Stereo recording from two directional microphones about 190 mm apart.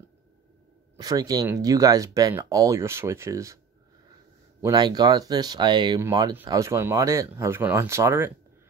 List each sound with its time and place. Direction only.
0.9 s speech: 20° right (ahead or behind)
4.6 s speech: 20° right (ahead or behind)